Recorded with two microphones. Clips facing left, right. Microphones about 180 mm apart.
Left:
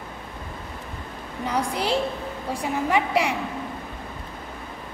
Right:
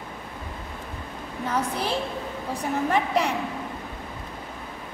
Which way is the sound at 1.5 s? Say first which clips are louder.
Left 2 dB; 15° left (ahead or behind).